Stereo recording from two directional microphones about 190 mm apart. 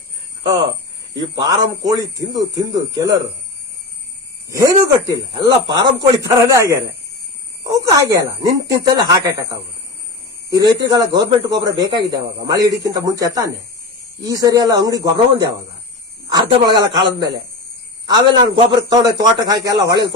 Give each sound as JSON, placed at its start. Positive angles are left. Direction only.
{"t": 1.5, "sound": "a man's voice", "side_deg": -20}
{"t": 4.4, "sound": "a man's voice", "side_deg": -15}
{"t": 10.5, "sound": "a man's voice", "side_deg": -20}